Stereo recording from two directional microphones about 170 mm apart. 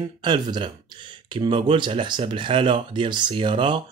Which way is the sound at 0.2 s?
25° right (ahead or behind).